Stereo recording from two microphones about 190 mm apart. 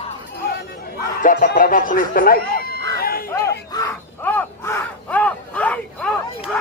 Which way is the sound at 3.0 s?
50° left (ahead or behind).